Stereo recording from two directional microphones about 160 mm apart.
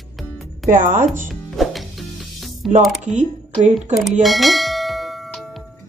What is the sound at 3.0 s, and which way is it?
Speech, 50° right (ahead or behind).